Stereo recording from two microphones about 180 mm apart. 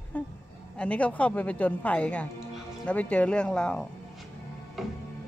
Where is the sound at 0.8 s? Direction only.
10° left (ahead or behind).